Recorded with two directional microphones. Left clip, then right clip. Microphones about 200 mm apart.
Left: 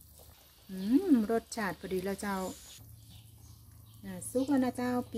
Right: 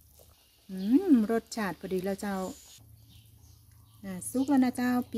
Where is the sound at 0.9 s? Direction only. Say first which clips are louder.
Right 3 dB; 20° right (ahead or behind).